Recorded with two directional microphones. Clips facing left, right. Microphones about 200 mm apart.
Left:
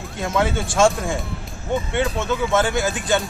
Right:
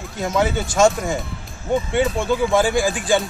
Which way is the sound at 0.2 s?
Centre (ahead or behind).